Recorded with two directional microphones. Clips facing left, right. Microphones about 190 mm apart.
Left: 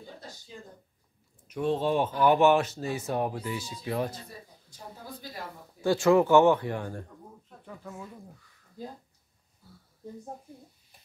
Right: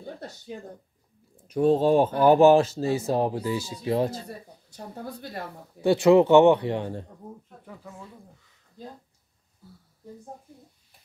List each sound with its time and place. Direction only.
0.0 s a sound: 60° right (ahead or behind)
1.5 s speech: 40° right (ahead or behind)
4.3 s speech: 65° right (ahead or behind)
5.8 s speech: 20° right (ahead or behind)
7.4 s speech: 5° right (ahead or behind)